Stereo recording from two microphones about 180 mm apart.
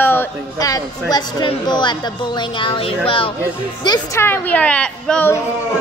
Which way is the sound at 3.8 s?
20° left (ahead or behind).